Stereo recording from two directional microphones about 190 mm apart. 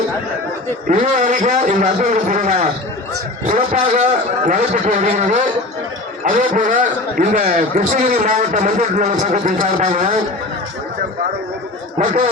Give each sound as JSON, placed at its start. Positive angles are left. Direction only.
{"t": 0.9, "sound": "a man's voice", "side_deg": -40}
{"t": 6.5, "sound": "a man's voice", "side_deg": -40}
{"t": 11.9, "sound": "a man's voice", "side_deg": -35}